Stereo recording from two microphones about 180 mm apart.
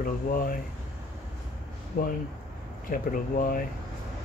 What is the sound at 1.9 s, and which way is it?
Speech, 55° left (ahead or behind).